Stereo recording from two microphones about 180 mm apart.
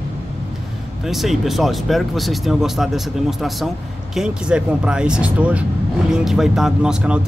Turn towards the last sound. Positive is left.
turn(degrees=-5)  # may be behind; listen again after turning